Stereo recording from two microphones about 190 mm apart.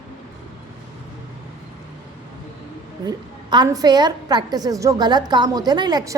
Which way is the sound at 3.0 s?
20° right (ahead or behind).